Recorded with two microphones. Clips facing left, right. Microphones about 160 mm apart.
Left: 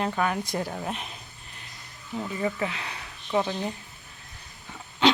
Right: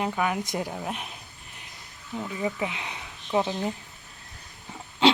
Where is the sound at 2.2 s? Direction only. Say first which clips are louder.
Left 1 dB; 5° right (ahead or behind).